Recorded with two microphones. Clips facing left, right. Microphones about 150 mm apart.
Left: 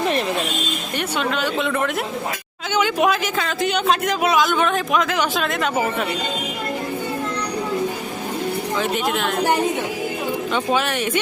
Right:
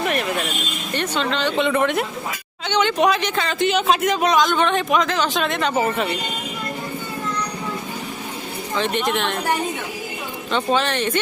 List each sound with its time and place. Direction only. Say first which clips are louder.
0.0 s a sound: left 2 dB; 30° left (ahead or behind)
0.9 s speech: right 1 dB; 10° left (ahead or behind)
8.8 s speech: right 2 dB; 5° left (ahead or behind)
10.5 s speech: right 3 dB; 10° left (ahead or behind)